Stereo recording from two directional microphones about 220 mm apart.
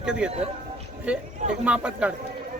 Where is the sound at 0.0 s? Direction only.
5° right (ahead or behind).